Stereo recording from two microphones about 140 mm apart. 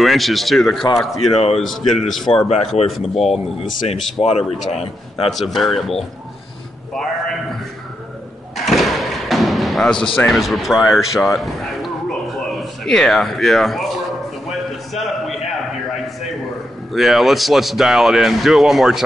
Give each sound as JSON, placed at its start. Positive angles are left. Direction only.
{"t": 0.0, "sound": "speech", "side_deg": 0}
{"t": 2.4, "sound": "speech", "side_deg": 45}
{"t": 4.6, "sound": "speech", "side_deg": 0}
{"t": 6.9, "sound": "a sound", "side_deg": 5}
{"t": 8.5, "sound": "thump", "side_deg": 0}
{"t": 10.2, "sound": "speech", "side_deg": 0}
{"t": 15.0, "sound": "a sound", "side_deg": 0}
{"t": 16.9, "sound": "speech", "side_deg": 0}